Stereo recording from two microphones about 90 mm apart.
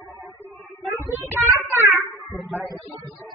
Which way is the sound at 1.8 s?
Centre (ahead or behind).